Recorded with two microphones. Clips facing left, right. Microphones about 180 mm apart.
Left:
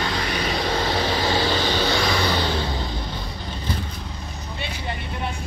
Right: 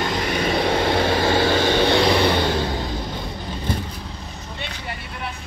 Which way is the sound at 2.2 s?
50° right (ahead or behind).